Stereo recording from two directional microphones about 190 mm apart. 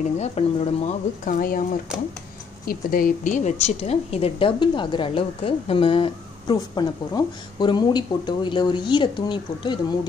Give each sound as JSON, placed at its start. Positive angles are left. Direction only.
{"t": 0.2, "sound": "a woman's voice", "side_deg": 35}